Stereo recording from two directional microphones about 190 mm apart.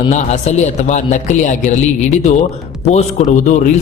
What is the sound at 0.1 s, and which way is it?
A man's voice, 35° left (ahead or behind).